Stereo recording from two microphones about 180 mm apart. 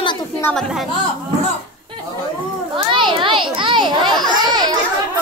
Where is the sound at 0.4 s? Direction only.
5° left (ahead or behind).